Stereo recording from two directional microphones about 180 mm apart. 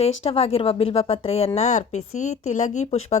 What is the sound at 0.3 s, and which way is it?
A woman's voice, 35° left (ahead or behind).